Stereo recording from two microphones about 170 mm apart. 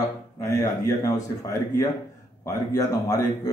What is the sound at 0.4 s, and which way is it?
A man's voice, 20° left (ahead or behind).